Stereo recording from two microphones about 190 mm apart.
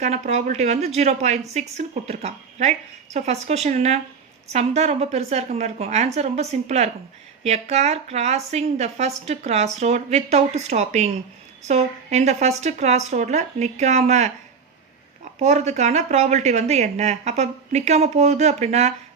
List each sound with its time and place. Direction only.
0.0 s a woman's voice: 35° right (ahead or behind)